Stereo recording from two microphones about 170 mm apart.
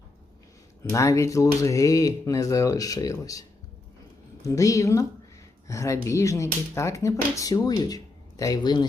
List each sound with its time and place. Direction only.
0.9 s speech: 20° left (ahead or behind)
4.4 s speech: 20° left (ahead or behind)